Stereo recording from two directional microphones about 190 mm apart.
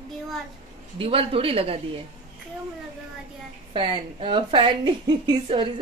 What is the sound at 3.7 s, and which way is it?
A woman's voice, 25° right (ahead or behind).